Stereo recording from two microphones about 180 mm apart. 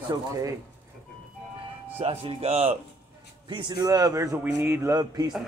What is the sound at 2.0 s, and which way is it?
Speech, 30° right (ahead or behind).